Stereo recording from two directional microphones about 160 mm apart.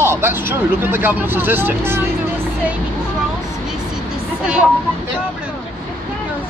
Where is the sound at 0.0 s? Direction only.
15° right (ahead or behind).